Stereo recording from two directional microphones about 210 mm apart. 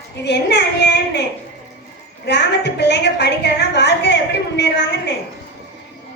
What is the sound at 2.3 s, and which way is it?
A woman's voice, 55° left (ahead or behind).